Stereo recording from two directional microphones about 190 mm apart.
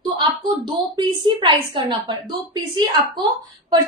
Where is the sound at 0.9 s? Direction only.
25° right (ahead or behind).